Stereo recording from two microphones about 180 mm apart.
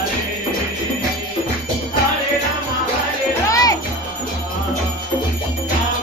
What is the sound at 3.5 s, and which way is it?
Jingle bell, 20° left (ahead or behind).